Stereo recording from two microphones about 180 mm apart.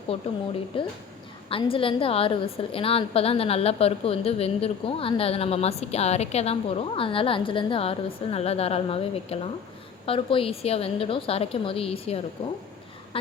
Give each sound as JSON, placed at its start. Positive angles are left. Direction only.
{"t": 0.1, "sound": "a woman's voice", "side_deg": 35}